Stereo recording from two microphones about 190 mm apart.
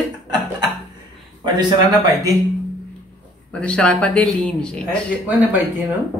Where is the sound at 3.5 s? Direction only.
5° left (ahead or behind).